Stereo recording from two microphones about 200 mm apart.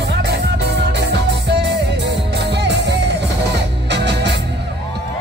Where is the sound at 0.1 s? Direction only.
60° right (ahead or behind).